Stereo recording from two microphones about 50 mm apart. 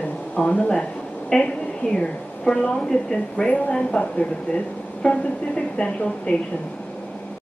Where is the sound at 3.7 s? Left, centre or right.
Centre.